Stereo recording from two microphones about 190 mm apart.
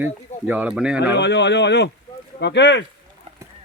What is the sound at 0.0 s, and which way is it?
Speech, 10° right (ahead or behind).